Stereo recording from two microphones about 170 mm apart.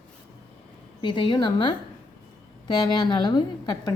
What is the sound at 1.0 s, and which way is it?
Speech, 30° left (ahead or behind).